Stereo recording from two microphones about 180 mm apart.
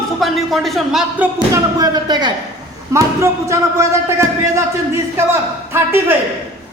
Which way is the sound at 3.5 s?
15° right (ahead or behind).